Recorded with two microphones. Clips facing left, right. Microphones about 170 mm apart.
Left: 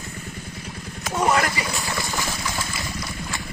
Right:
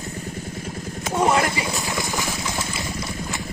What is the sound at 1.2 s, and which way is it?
Speech, 25° right (ahead or behind).